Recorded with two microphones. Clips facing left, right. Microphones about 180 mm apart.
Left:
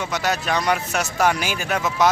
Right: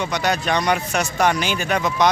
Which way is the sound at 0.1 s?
5° left (ahead or behind).